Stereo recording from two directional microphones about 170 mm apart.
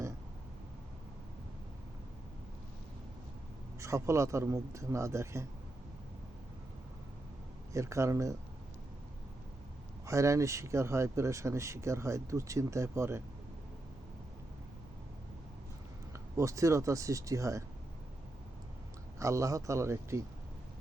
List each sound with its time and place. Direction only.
3.8 s speech: 15° right (ahead or behind)
7.7 s speech: 15° right (ahead or behind)
10.1 s speech: 20° right (ahead or behind)
16.4 s speech: 20° right (ahead or behind)
19.2 s speech: 20° right (ahead or behind)